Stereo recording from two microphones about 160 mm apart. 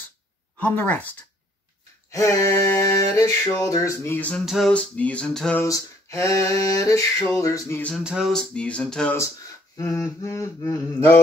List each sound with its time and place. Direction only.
0.6 s speech: 10° left (ahead or behind)
2.0 s a sound: 20° left (ahead or behind)
2.9 s music: 20° left (ahead or behind)
4.5 s speech: centre (ahead or behind)
5.6 s music: 20° left (ahead or behind)
8.0 s speech: 5° right (ahead or behind)
9.8 s music: 20° left (ahead or behind)